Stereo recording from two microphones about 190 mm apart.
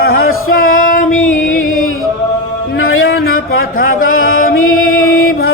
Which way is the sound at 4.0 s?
90° left.